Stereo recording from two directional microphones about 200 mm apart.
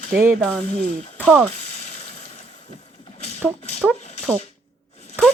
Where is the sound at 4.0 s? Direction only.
35° left (ahead or behind).